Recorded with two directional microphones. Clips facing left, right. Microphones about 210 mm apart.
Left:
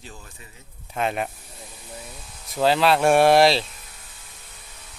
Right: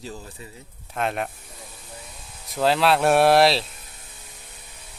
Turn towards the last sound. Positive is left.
turn(degrees=0)  # may be behind; listen again after turning